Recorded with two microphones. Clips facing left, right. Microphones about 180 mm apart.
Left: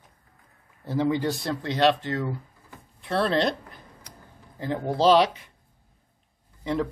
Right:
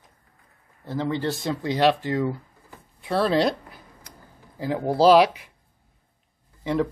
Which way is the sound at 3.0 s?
5° right (ahead or behind).